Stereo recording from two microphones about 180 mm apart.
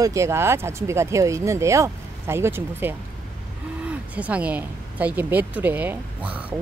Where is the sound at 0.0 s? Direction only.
15° right (ahead or behind).